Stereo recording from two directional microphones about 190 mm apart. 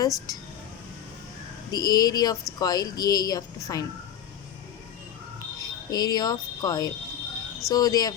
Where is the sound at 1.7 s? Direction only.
20° left (ahead or behind).